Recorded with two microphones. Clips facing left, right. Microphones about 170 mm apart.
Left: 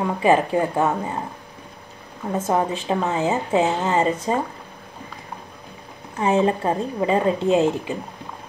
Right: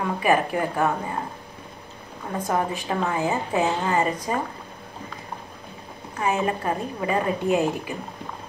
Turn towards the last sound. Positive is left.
turn(degrees=20)  # may be behind; listen again after turning